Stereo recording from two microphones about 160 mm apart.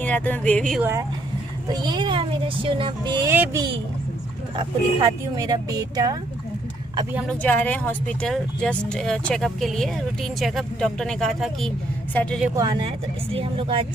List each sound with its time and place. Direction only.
0.0 s speech: 10° left (ahead or behind)
1.7 s speech: 25° right (ahead or behind)
3.3 s speech: 15° right (ahead or behind)
4.6 s speech: 25° right (ahead or behind)
7.2 s speech: 10° left (ahead or behind)
12.5 s speech: 30° right (ahead or behind)